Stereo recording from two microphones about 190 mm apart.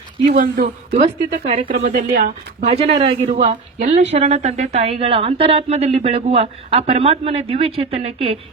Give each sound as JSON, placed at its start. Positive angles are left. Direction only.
{"t": 0.3, "sound": "speech", "side_deg": -50}
{"t": 2.6, "sound": "a woman's voice", "side_deg": -35}